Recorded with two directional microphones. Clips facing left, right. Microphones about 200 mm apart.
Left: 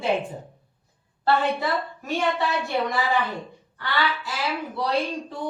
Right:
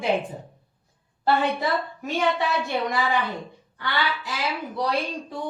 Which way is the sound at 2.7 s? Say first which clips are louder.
Even; 15° right (ahead or behind).